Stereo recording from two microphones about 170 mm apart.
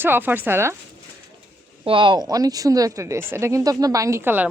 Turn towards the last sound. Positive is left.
turn(degrees=-10)  # may be behind; listen again after turning